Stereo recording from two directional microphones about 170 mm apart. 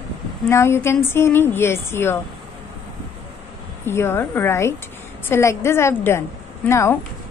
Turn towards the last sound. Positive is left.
turn(degrees=15)  # may be behind; listen again after turning